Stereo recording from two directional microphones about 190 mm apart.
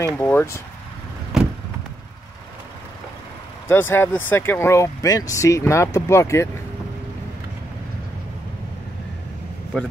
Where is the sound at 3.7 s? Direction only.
10° left (ahead or behind).